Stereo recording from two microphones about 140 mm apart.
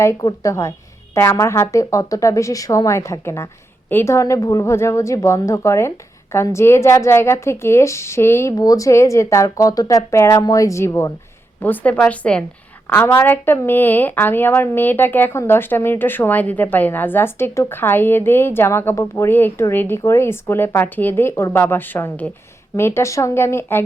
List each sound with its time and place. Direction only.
0.0 s a woman's voice: 25° left (ahead or behind)